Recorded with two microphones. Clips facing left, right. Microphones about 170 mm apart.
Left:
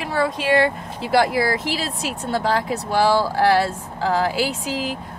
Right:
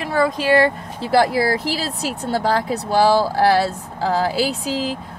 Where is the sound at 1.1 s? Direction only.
35° right (ahead or behind).